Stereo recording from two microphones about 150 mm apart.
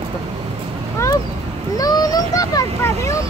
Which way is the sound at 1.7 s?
25° left (ahead or behind).